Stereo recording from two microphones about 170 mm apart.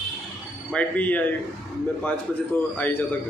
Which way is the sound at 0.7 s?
10° left (ahead or behind).